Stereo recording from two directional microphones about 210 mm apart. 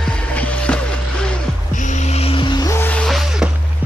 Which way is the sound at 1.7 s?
35° left (ahead or behind).